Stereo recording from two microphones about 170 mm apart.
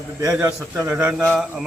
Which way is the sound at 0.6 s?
5° right (ahead or behind).